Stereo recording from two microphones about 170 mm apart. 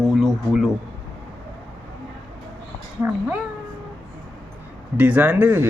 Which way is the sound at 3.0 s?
15° right (ahead or behind).